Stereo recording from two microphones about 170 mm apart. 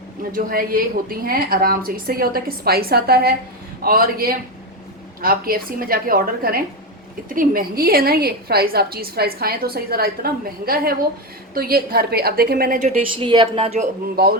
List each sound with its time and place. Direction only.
0.3 s a woman's voice: 55° right (ahead or behind)
13.1 s a woman's voice: 30° right (ahead or behind)
14.2 s speech: 65° right (ahead or behind)